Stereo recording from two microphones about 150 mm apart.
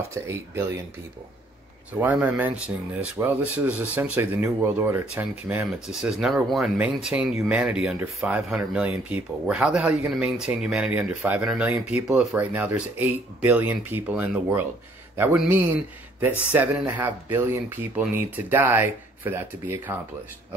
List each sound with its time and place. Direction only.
0.1 s speech: 20° right (ahead or behind)
2.0 s speech: 10° right (ahead or behind)